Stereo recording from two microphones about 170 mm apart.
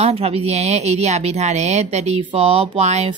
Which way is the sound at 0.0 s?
35° right (ahead or behind).